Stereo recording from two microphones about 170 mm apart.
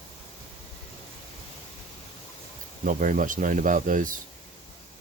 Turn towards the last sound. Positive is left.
turn(degrees=-50)  # may be behind; listen again after turning